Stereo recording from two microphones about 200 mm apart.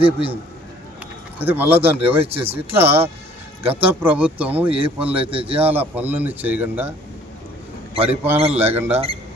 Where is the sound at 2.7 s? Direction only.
10° right (ahead or behind).